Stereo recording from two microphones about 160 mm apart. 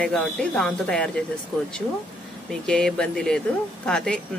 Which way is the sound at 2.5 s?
5° left (ahead or behind).